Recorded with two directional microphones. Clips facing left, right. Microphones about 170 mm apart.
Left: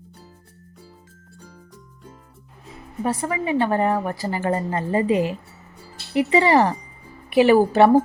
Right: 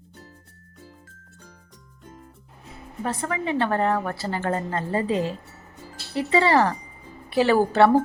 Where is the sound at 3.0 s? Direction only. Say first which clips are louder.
Left 3 dB; 10° left (ahead or behind).